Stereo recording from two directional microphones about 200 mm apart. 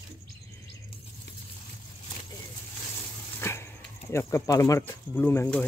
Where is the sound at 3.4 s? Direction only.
15° left (ahead or behind).